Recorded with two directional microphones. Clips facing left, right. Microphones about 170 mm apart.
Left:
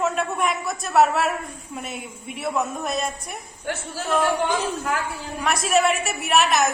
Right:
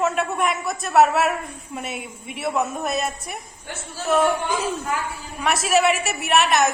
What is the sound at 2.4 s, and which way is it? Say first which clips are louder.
Speech: right 2 dB; 5° right (ahead or behind).